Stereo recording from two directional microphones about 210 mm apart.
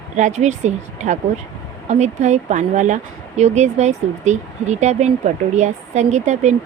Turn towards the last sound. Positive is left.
turn(degrees=-35)  # may be behind; listen again after turning